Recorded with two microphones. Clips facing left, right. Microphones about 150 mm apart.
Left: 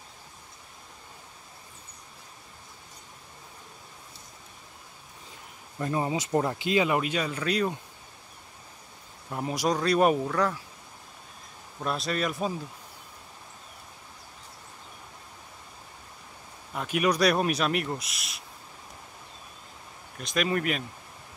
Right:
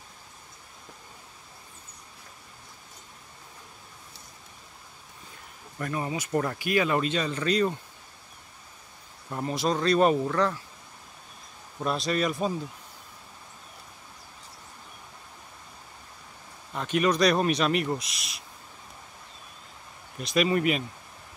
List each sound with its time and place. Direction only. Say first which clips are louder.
5.8 s speech: left 3 dB; 25° left (ahead or behind); by 7.7 s 5° left (ahead or behind)
9.3 s speech: even; 10° left (ahead or behind)
11.8 s speech: right 2 dB; centre (ahead or behind)
16.7 s speech: right 1 dB; 5° left (ahead or behind)
20.2 s speech: right 3 dB; centre (ahead or behind)